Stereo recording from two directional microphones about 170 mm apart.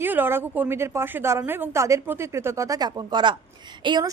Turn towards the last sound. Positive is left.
turn(degrees=-25)  # may be behind; listen again after turning